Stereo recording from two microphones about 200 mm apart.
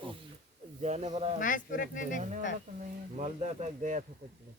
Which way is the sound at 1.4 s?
40° left (ahead or behind).